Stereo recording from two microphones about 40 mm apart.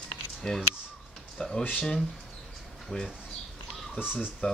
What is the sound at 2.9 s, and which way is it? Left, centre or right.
Speech, left.